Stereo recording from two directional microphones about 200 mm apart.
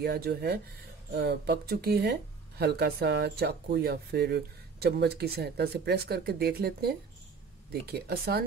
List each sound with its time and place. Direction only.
0.0 s speech: 50° right (ahead or behind)